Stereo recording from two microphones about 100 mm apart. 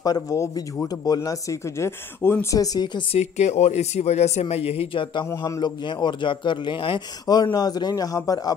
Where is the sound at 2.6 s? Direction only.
45° left (ahead or behind).